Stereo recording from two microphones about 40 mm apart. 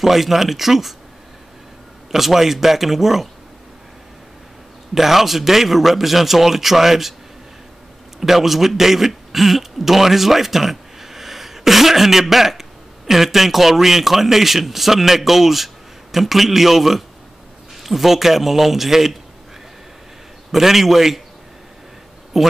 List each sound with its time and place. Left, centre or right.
0.0 s a man's voice: centre
2.1 s a man's voice: centre
4.9 s a man's voice: centre
8.2 s a man's voice: centre
20.5 s a man's voice: centre
22.3 s a man's voice: centre